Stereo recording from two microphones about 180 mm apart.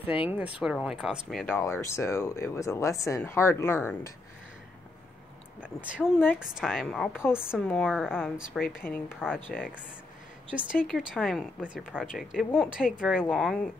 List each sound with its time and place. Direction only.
0.0 s speech: 10° right (ahead or behind)
1.6 s speech: 15° left (ahead or behind)
5.6 s speech: 5° right (ahead or behind)
8.8 s speech: 10° left (ahead or behind)
9.2 s speech: 5° right (ahead or behind)